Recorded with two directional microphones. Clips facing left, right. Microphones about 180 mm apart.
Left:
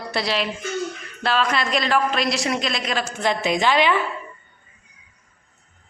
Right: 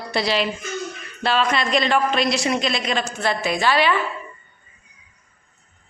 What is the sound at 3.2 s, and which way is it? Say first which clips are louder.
Speech: left 1 dB; 20° left (ahead or behind).